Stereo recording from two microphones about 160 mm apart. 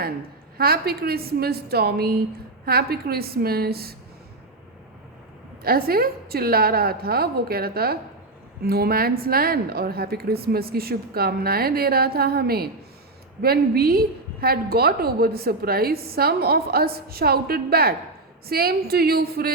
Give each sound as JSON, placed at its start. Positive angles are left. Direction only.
{"t": 0.5, "sound": "a woman's voice", "side_deg": -70}
{"t": 5.6, "sound": "a woman's voice", "side_deg": -70}